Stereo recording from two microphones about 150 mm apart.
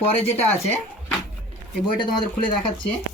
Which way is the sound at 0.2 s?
15° left (ahead or behind).